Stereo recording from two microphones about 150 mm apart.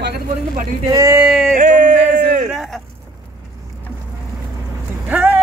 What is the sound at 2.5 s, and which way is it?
Speech, centre (ahead or behind).